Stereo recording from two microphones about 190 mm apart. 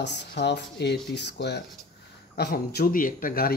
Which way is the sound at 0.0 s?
65° left (ahead or behind).